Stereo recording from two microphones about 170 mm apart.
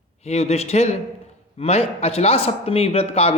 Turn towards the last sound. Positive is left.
turn(degrees=35)  # may be behind; listen again after turning